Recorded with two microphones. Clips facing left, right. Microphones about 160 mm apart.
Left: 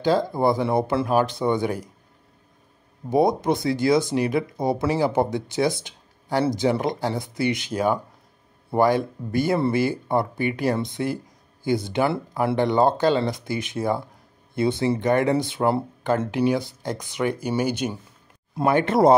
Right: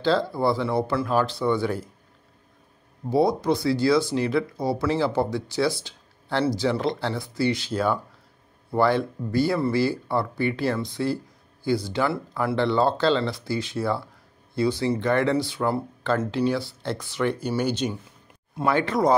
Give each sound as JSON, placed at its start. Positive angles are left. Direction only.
{"t": 0.0, "sound": "speech", "side_deg": 15}
{"t": 3.1, "sound": "speech", "side_deg": 20}
{"t": 18.7, "sound": "speech", "side_deg": 20}